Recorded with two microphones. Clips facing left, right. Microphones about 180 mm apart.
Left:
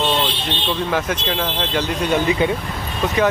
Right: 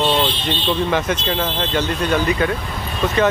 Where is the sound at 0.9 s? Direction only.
5° left (ahead or behind).